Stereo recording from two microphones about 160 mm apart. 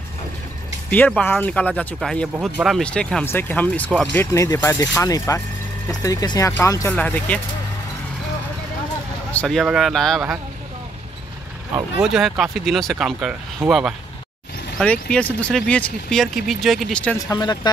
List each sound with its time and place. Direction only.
0.8 s speech: 10° left (ahead or behind)
9.3 s speech: 5° left (ahead or behind)
12.0 s speech: centre (ahead or behind)
17.3 s speech: 25° left (ahead or behind)